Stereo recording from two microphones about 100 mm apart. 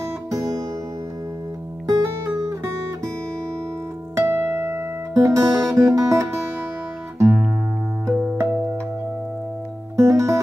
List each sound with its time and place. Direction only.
0.3 s music: 35° right (ahead or behind)
1.9 s music: 35° right (ahead or behind)
4.3 s music: 25° right (ahead or behind)
9.9 s music: 30° right (ahead or behind)